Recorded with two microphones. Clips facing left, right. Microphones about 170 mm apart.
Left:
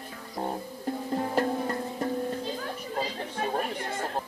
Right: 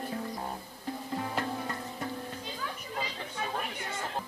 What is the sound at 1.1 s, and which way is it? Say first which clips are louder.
Music: left 7 dB; 40° left (ahead or behind).